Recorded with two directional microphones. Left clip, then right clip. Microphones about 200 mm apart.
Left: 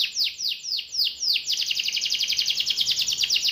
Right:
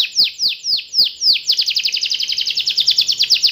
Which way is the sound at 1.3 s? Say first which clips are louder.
Right 8 dB; 20° right (ahead or behind).